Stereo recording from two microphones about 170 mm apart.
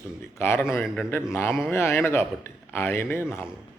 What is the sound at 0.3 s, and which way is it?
A man's voice, 15° left (ahead or behind).